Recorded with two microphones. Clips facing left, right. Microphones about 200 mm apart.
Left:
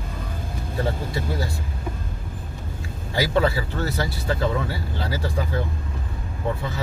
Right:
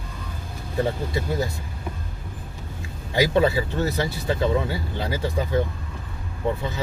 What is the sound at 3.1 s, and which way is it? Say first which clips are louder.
Speech: right 2 dB; 20° right (ahead or behind).